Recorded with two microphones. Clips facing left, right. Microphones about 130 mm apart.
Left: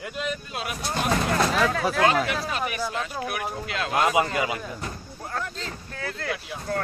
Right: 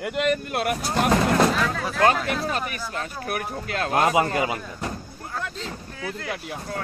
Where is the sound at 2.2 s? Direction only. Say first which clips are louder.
Right 2 dB; 45° right (ahead or behind).